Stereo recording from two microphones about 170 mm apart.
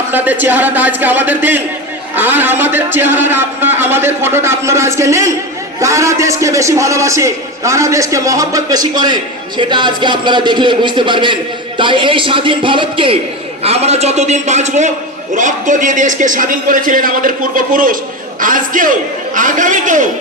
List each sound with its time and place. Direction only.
0.1 s a man's voice: 10° right (ahead or behind); by 20.1 s 50° right (ahead or behind)